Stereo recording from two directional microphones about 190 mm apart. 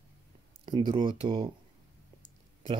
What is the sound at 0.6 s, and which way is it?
Speech, 25° right (ahead or behind).